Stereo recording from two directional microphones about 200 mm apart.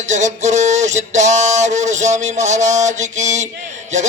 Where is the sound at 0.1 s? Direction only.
35° right (ahead or behind).